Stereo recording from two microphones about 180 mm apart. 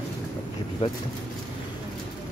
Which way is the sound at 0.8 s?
35° left (ahead or behind).